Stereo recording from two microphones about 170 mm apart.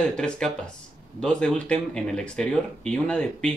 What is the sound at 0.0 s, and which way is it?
Speech, 5° left (ahead or behind).